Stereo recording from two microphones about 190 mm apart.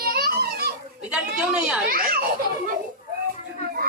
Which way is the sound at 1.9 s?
50° right (ahead or behind).